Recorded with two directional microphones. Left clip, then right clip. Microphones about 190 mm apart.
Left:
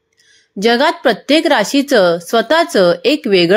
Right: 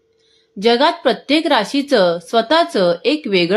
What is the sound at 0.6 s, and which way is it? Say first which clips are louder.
Speech: left 1 dB; 25° left (ahead or behind).